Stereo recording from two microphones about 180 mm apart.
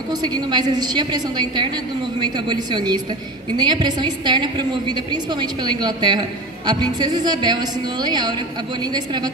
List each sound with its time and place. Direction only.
0.1 s a woman's voice: 20° right (ahead or behind)